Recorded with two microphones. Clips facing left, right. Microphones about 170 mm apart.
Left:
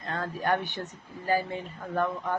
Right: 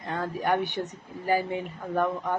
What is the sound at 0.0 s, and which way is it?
Speech, 15° right (ahead or behind).